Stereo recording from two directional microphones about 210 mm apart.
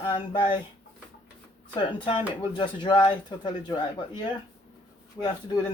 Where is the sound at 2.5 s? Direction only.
20° left (ahead or behind).